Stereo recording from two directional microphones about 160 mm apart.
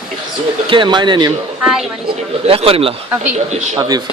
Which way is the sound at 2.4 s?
35° right (ahead or behind).